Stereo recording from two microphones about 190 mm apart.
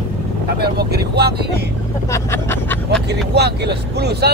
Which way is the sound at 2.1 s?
10° left (ahead or behind).